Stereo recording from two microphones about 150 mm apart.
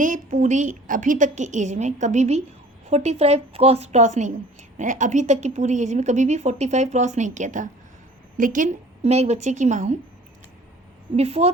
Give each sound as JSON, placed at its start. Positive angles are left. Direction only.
{"t": 0.0, "sound": "a woman's voice", "side_deg": -55}
{"t": 9.0, "sound": "a woman's voice", "side_deg": -45}
{"t": 11.2, "sound": "a woman's voice", "side_deg": -45}